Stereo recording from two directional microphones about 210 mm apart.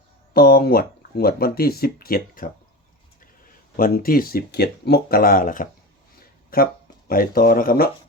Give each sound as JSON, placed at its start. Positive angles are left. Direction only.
{"t": 0.3, "sound": "speech", "side_deg": 45}
{"t": 3.8, "sound": "speech", "side_deg": 45}
{"t": 7.1, "sound": "speech", "side_deg": 45}